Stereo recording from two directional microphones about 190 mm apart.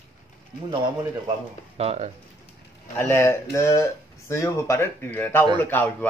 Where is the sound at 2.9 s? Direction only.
15° left (ahead or behind).